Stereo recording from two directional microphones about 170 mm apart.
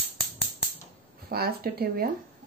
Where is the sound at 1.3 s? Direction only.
65° right (ahead or behind).